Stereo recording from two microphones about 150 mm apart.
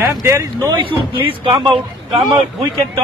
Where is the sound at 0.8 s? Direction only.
35° right (ahead or behind).